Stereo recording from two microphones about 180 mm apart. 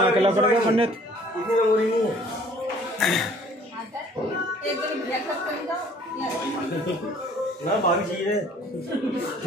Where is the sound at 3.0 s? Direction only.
Centre (ahead or behind).